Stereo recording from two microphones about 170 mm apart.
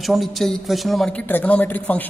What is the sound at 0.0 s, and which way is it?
A man's voice, centre (ahead or behind).